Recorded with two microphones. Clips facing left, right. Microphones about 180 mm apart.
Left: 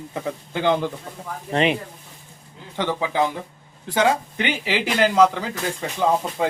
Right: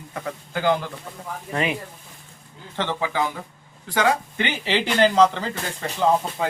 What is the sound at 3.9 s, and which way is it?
Speech, 15° left (ahead or behind).